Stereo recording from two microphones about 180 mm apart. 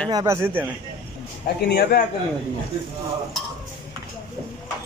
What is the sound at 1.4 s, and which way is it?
Speech, 60° left (ahead or behind).